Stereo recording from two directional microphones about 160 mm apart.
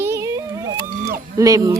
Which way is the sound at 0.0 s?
15° right (ahead or behind).